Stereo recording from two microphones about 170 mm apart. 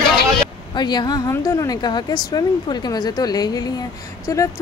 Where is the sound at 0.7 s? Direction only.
25° left (ahead or behind).